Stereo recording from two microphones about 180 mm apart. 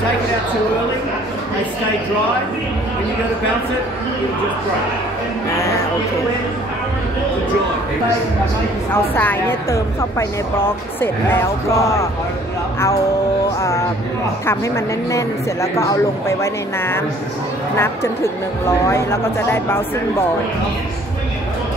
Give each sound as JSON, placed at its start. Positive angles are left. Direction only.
{"t": 5.5, "sound": "a woman's voice", "side_deg": 15}
{"t": 8.9, "sound": "a woman's voice", "side_deg": 10}
{"t": 13.6, "sound": "a woman's voice", "side_deg": 15}